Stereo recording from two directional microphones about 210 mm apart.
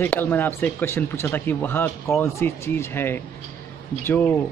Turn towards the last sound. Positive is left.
turn(degrees=10)  # may be behind; listen again after turning